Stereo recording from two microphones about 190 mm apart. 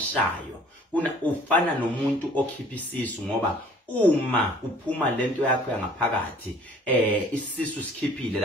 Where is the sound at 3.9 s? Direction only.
10° left (ahead or behind).